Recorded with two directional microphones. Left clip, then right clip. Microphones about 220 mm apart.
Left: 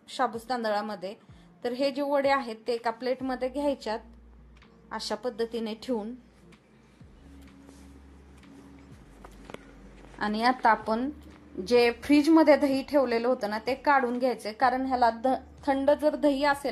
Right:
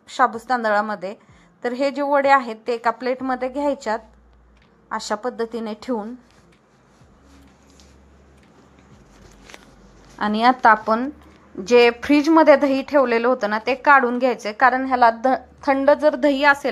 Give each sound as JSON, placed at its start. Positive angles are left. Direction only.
{"t": 0.1, "sound": "a woman's voice", "side_deg": -10}
{"t": 10.1, "sound": "a woman's voice", "side_deg": -15}